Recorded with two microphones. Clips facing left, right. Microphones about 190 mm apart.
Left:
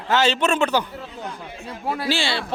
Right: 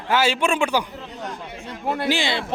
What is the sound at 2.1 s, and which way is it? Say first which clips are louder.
Speech: even; 20° right (ahead or behind).